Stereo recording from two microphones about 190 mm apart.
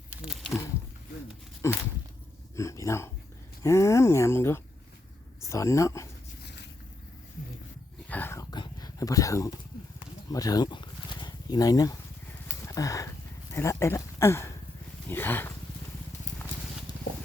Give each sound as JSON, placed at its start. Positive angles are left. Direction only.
{"t": 1.6, "sound": "dog", "side_deg": 15}
{"t": 3.6, "sound": "speech", "side_deg": 15}
{"t": 8.1, "sound": "a sound", "side_deg": 10}
{"t": 13.5, "sound": "speech", "side_deg": 15}